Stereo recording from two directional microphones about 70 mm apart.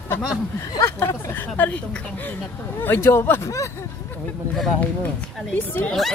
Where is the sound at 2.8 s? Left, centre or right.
Left.